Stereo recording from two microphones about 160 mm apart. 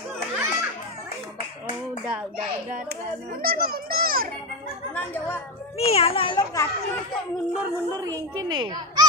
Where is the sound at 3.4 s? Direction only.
65° right (ahead or behind).